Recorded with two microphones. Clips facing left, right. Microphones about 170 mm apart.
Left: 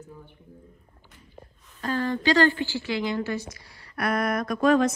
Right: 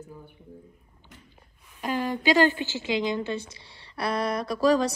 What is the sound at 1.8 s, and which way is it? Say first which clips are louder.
A woman's voice: left 1 dB; 15° right (ahead or behind).